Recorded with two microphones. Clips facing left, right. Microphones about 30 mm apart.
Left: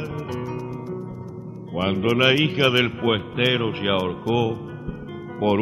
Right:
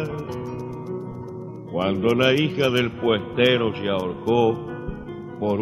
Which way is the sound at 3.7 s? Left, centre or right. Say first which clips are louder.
Left 1 dB; left.